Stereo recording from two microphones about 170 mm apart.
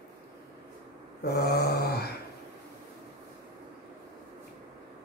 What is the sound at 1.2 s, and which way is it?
Mantra, 70° left (ahead or behind).